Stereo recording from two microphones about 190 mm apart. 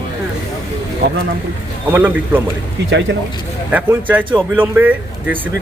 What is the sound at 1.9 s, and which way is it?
Speech, 10° right (ahead or behind).